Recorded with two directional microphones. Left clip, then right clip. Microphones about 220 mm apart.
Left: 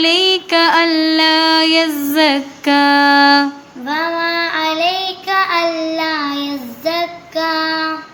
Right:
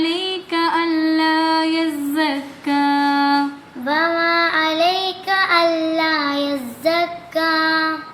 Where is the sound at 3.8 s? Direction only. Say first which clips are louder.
Even; 5° left (ahead or behind).